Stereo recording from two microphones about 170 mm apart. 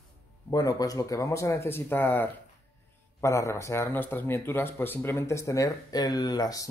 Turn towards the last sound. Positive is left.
turn(degrees=20)  # may be behind; listen again after turning